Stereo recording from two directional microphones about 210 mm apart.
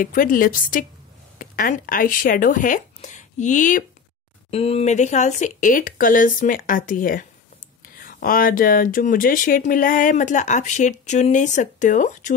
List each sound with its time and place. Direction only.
0.0 s speech: 40° left (ahead or behind)